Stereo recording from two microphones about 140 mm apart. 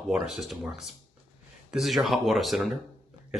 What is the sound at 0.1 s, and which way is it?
Speech, centre (ahead or behind).